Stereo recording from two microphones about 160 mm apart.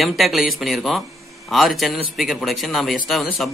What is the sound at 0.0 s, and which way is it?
A man's voice, centre (ahead or behind).